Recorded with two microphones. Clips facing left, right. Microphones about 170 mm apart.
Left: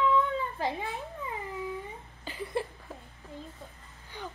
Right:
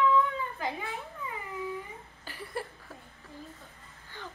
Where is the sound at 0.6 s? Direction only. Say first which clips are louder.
Left 3 dB; 30° left (ahead or behind).